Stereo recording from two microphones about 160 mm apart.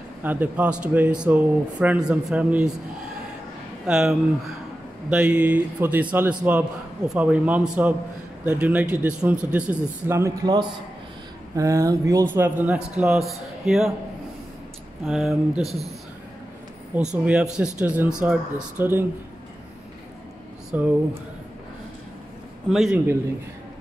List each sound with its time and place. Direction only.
0.2 s speech: 10° right (ahead or behind)
3.8 s speech: 5° right (ahead or behind)
15.0 s speech: centre (ahead or behind)
16.9 s speech: 10° right (ahead or behind)
20.7 s speech: 10° right (ahead or behind)
22.7 s speech: centre (ahead or behind)